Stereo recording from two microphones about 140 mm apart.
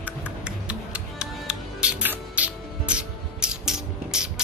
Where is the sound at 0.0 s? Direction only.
10° right (ahead or behind).